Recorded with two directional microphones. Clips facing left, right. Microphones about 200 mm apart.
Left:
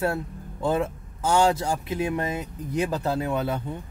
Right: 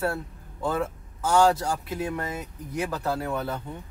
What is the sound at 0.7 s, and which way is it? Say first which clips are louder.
Speech: left 3 dB; 25° left (ahead or behind).